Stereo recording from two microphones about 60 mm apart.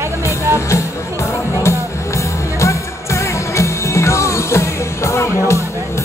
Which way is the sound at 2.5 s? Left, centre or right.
Left.